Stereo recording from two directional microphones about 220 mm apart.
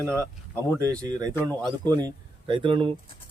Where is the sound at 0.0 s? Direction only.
10° right (ahead or behind).